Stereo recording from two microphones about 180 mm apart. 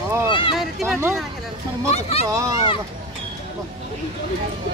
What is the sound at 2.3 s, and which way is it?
Speech, 20° right (ahead or behind).